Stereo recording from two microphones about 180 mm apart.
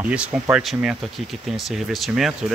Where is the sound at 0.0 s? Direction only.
5° right (ahead or behind).